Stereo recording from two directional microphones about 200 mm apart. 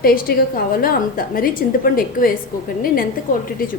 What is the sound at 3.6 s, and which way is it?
Speech, 45° left (ahead or behind).